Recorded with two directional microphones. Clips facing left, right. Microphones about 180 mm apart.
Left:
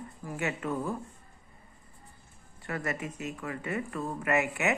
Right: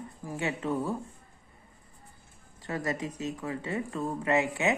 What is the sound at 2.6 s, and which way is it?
Speech, 20° right (ahead or behind).